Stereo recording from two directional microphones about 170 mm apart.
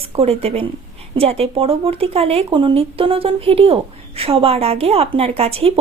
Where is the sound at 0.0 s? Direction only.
35° right (ahead or behind).